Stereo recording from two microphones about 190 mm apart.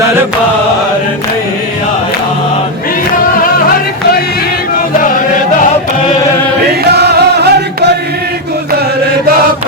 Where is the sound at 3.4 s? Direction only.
50° left (ahead or behind).